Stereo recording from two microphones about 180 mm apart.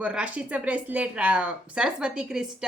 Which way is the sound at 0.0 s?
5° right (ahead or behind).